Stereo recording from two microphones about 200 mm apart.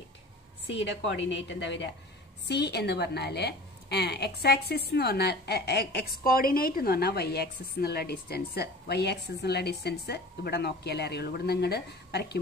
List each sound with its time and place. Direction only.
0.7 s a woman's voice: 60° left (ahead or behind)